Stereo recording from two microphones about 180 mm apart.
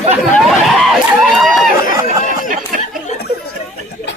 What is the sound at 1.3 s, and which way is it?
Speech, centre (ahead or behind).